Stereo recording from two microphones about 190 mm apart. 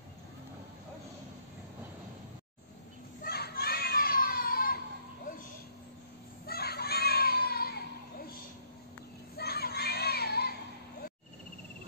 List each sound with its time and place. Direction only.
3.3 s children playing: 55° left (ahead or behind)
6.4 s children playing: 55° left (ahead or behind)
9.4 s children shouting: 55° left (ahead or behind)